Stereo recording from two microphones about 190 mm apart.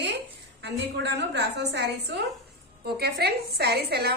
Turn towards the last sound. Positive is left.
turn(degrees=-55)  # may be behind; listen again after turning